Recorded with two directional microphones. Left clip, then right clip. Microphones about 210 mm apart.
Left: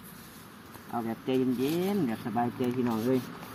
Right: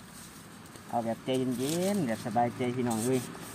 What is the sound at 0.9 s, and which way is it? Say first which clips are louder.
Speech: even; 20° right (ahead or behind).